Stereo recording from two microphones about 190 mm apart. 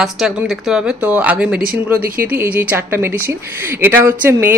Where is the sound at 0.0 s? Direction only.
Centre (ahead or behind).